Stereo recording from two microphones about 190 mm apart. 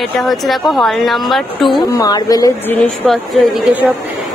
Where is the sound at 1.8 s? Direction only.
20° left (ahead or behind).